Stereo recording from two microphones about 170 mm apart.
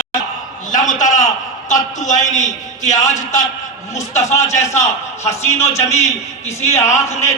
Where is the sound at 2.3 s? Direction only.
45° left (ahead or behind).